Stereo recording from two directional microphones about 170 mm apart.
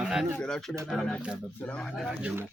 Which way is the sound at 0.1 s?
Centre (ahead or behind).